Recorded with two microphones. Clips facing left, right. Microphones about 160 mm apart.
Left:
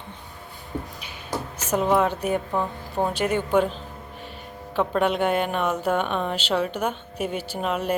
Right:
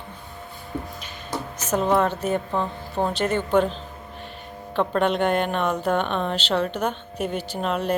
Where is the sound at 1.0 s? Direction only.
10° left (ahead or behind).